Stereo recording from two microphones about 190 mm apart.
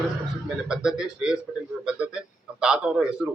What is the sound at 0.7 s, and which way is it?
A man's voice, 5° right (ahead or behind).